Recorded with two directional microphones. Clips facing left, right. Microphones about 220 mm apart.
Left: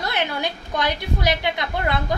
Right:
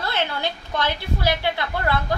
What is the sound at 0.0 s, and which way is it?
A woman's voice, 15° left (ahead or behind).